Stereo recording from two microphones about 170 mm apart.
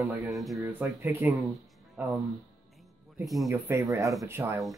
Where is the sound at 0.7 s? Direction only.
10° right (ahead or behind).